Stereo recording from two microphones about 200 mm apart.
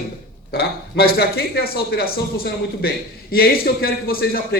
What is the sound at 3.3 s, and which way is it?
A man's voice, 50° left (ahead or behind).